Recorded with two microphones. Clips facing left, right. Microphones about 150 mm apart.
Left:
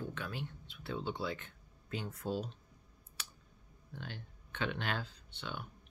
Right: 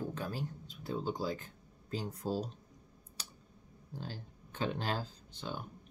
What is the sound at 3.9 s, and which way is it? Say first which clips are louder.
Speech: right 3 dB; 35° right (ahead or behind).